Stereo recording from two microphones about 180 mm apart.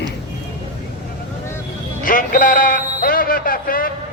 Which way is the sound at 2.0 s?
50° left (ahead or behind).